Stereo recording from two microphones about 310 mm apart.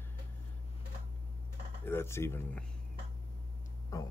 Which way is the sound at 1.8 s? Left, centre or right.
Centre.